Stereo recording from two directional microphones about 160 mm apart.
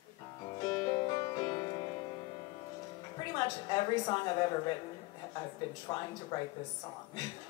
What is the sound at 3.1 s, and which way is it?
A woman's voice, 25° left (ahead or behind).